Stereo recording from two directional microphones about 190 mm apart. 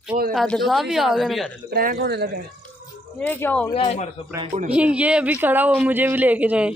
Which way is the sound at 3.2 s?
10° left (ahead or behind).